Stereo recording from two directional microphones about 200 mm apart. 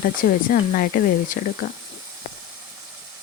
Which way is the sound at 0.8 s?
45° left (ahead or behind).